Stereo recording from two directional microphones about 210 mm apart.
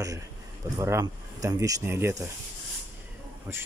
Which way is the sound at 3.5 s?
10° right (ahead or behind).